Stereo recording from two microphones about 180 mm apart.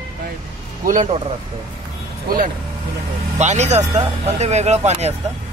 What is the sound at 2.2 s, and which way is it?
Speech, 55° right (ahead or behind).